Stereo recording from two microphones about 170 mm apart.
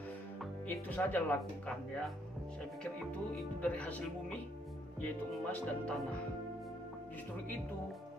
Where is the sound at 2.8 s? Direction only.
5° left (ahead or behind).